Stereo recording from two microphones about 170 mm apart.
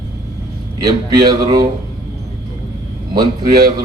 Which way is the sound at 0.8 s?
20° right (ahead or behind).